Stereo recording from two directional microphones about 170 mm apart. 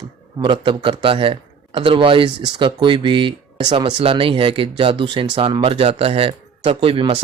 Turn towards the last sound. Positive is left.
turn(degrees=-30)  # may be behind; listen again after turning